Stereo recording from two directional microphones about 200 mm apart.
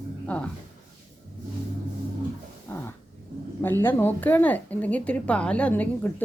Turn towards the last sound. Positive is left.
turn(degrees=10)  # may be behind; listen again after turning